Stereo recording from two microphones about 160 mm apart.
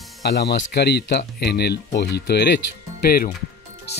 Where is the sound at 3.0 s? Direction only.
70° left (ahead or behind).